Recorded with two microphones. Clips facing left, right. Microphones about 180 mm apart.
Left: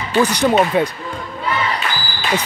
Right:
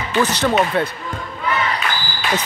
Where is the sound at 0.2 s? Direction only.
15° left (ahead or behind).